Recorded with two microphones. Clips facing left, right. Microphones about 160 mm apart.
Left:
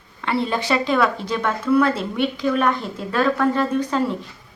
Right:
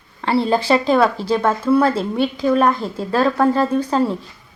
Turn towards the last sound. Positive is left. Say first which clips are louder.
# right 3 dB
turn(degrees=-35)  # may be behind; listen again after turning